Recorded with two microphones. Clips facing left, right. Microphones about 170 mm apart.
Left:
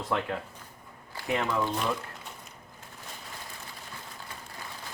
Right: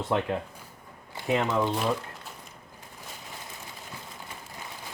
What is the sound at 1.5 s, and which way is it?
Speech, 20° right (ahead or behind).